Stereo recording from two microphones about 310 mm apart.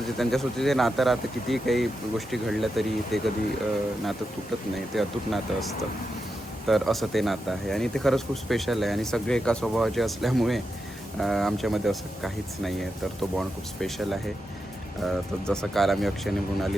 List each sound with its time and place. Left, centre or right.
0.2 s speech: centre
4.9 s speech: centre